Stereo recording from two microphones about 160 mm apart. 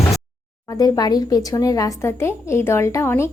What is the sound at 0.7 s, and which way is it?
Speech, 25° left (ahead or behind).